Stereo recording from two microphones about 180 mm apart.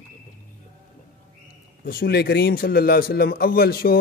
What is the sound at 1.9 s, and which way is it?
Speech, 60° left (ahead or behind).